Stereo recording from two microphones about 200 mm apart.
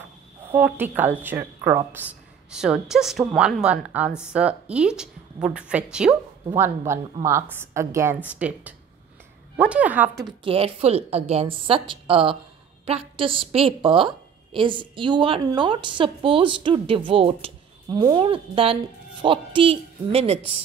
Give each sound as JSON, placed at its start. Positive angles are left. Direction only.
{"t": 0.5, "sound": "a woman's voice", "side_deg": -10}
{"t": 10.4, "sound": "a woman's voice", "side_deg": -30}